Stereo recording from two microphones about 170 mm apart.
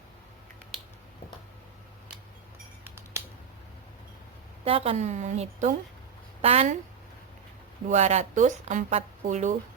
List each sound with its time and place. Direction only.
2.8 s a sound: 15° right (ahead or behind)
4.6 s a woman's voice: 35° right (ahead or behind)
7.9 s a woman's voice: 40° right (ahead or behind)